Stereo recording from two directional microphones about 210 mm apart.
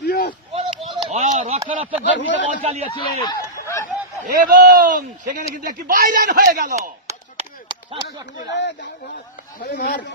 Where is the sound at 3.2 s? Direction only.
15° left (ahead or behind).